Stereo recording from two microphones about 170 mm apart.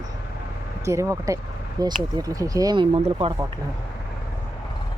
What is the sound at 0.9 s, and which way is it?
Speech, 15° right (ahead or behind).